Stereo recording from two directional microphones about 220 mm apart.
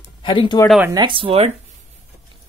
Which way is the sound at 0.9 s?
20° right (ahead or behind).